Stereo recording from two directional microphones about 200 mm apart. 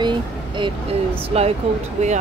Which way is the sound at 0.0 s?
25° right (ahead or behind).